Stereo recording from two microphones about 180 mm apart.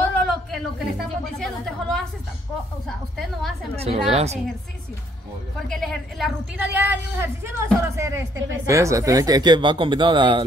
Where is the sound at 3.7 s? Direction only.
35° right (ahead or behind).